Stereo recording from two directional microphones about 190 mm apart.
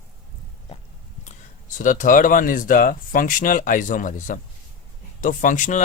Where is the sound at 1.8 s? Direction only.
45° left (ahead or behind).